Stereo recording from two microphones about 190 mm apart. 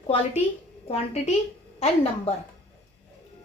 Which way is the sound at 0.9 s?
35° left (ahead or behind).